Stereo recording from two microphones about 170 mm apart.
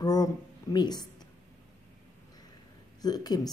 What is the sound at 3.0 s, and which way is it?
Speech, 25° left (ahead or behind).